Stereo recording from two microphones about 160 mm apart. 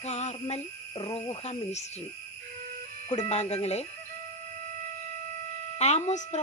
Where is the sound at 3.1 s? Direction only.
40° left (ahead or behind).